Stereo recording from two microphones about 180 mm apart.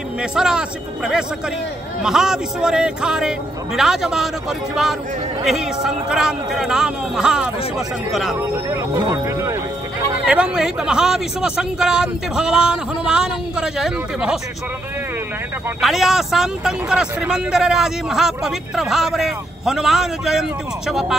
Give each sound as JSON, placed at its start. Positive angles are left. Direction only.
{"t": 0.2, "sound": "speech", "side_deg": -5}
{"t": 8.4, "sound": "speech", "side_deg": -15}
{"t": 10.2, "sound": "speech", "side_deg": -5}
{"t": 15.8, "sound": "speech", "side_deg": 0}